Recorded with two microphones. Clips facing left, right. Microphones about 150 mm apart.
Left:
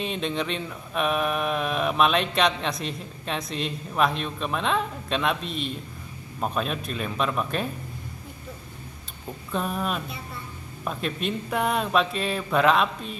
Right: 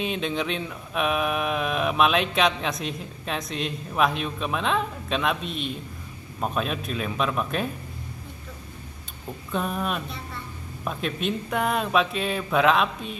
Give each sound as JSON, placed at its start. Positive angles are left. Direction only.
{"t": 0.0, "sound": "mantra", "side_deg": 0}
{"t": 9.5, "sound": "mantra", "side_deg": 0}